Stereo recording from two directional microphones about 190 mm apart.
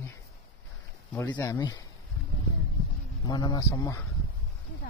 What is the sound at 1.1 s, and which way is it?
Speech, 15° left (ahead or behind).